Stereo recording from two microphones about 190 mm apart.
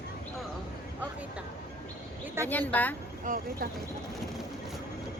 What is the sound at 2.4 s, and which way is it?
Speech, 10° left (ahead or behind).